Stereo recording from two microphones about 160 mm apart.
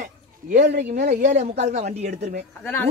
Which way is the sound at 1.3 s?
45° right (ahead or behind).